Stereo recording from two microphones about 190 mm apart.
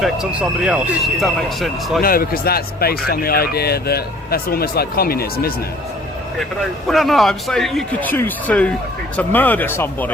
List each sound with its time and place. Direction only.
0.0 s speech: 5° right (ahead or behind)
2.0 s speech: 50° left (ahead or behind)
6.8 s speech: centre (ahead or behind)